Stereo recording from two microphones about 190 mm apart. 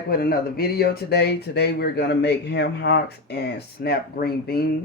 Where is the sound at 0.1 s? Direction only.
50° left (ahead or behind).